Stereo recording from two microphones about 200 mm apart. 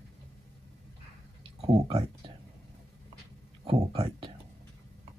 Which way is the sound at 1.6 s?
25° right (ahead or behind).